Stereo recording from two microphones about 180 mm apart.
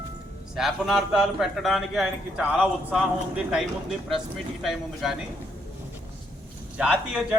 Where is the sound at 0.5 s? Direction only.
Centre (ahead or behind).